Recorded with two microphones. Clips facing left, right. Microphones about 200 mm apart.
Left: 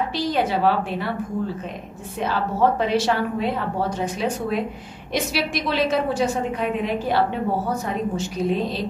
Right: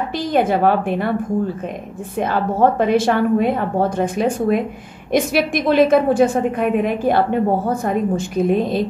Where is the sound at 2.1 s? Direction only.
50° right (ahead or behind).